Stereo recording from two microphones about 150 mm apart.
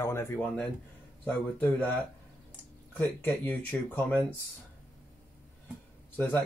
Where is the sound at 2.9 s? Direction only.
10° left (ahead or behind).